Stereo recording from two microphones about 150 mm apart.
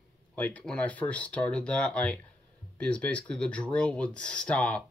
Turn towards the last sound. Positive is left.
turn(degrees=10)  # may be behind; listen again after turning